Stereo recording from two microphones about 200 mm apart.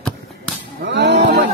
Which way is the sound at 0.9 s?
60° right (ahead or behind).